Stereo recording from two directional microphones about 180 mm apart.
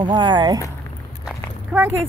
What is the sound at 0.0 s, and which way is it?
Speech, 25° right (ahead or behind).